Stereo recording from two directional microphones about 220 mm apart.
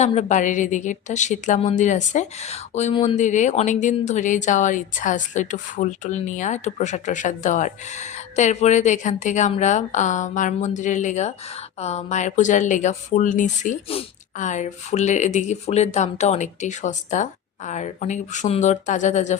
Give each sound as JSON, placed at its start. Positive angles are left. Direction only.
{"t": 0.0, "sound": "a woman's voice", "side_deg": 30}